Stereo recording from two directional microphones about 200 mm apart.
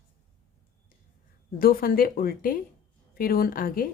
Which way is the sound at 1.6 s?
45° left (ahead or behind).